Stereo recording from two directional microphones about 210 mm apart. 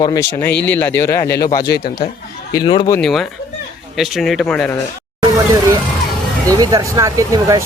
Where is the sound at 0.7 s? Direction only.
10° left (ahead or behind).